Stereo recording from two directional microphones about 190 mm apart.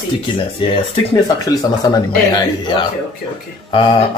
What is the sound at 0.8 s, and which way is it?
Speech, 25° left (ahead or behind).